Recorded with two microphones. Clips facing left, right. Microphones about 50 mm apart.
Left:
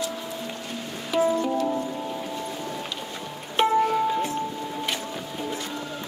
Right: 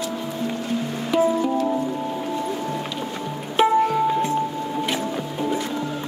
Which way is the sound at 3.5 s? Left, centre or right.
Centre.